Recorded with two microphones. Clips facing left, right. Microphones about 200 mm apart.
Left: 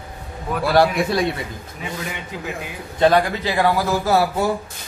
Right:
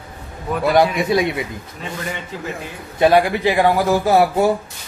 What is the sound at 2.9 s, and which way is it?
A man's voice, 15° right (ahead or behind).